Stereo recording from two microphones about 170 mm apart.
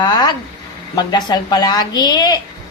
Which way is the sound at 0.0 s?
25° left (ahead or behind).